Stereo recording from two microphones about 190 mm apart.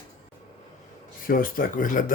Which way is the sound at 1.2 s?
50° left (ahead or behind).